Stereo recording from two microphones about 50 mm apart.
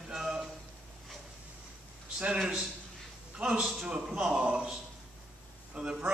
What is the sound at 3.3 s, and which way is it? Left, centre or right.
Speech, right.